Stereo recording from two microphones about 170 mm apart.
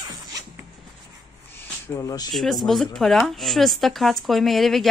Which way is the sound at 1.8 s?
20° left (ahead or behind).